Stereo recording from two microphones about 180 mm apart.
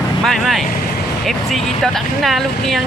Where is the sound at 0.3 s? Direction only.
Centre (ahead or behind).